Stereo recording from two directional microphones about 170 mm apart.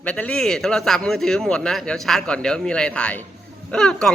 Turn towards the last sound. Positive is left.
turn(degrees=5)  # may be behind; listen again after turning